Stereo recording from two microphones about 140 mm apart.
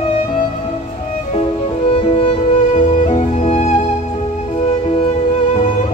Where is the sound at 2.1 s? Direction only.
45° left (ahead or behind).